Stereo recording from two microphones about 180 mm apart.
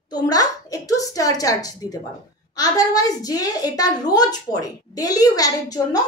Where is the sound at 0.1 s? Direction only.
20° left (ahead or behind).